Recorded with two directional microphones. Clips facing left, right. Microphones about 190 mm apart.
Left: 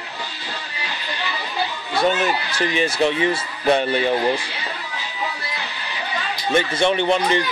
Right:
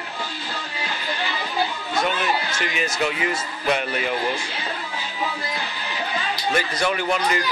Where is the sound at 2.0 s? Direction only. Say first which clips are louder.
Left 4 dB; 35° left (ahead or behind).